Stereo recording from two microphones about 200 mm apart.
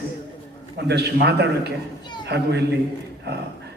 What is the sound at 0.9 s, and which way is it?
Speech, 55° right (ahead or behind).